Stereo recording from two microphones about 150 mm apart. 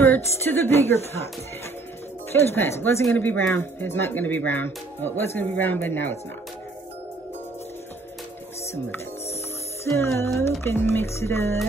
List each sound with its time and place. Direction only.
0.0 s speech: 15° left (ahead or behind)
2.3 s speech: 15° left (ahead or behind)
9.9 s speech: 15° left (ahead or behind)